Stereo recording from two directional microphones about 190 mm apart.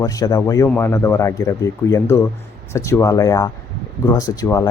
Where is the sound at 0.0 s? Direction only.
20° left (ahead or behind).